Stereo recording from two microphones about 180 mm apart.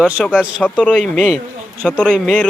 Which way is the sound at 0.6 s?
5° left (ahead or behind).